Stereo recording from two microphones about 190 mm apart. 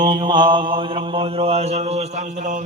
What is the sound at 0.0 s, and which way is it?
Mantra, 25° right (ahead or behind).